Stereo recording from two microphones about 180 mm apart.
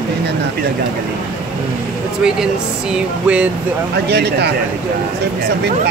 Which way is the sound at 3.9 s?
65° right (ahead or behind).